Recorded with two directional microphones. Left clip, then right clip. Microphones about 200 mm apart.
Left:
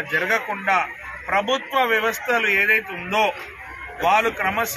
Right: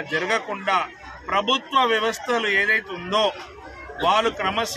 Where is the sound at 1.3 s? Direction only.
25° right (ahead or behind).